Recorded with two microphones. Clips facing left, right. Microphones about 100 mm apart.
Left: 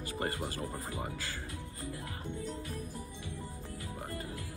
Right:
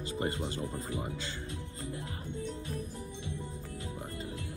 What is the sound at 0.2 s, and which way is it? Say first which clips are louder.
Speech: right 2 dB; 20° right (ahead or behind).